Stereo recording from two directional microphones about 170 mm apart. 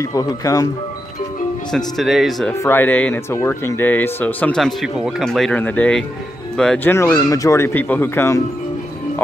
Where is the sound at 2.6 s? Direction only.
10° left (ahead or behind).